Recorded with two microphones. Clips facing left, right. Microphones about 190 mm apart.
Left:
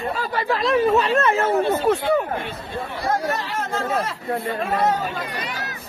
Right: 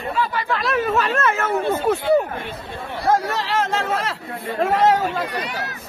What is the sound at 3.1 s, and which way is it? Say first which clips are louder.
Speech: right 4 dB; 90° right.